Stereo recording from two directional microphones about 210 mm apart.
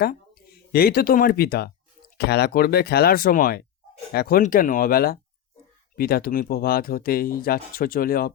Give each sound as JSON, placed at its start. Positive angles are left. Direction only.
{"t": 0.0, "sound": "speech", "side_deg": 50}